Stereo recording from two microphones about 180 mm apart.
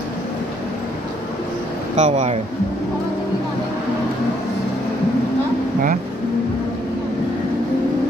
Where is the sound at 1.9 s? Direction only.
40° right (ahead or behind).